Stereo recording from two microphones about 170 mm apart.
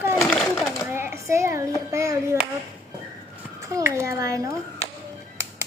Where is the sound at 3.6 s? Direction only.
20° right (ahead or behind).